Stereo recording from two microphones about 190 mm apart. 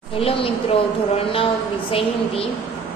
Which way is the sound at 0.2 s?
30° left (ahead or behind).